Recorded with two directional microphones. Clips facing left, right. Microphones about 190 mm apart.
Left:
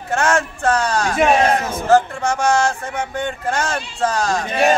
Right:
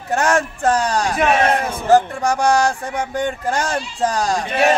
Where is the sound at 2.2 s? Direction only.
15° right (ahead or behind).